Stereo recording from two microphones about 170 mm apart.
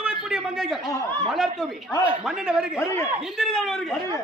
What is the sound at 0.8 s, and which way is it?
Speech, 20° left (ahead or behind).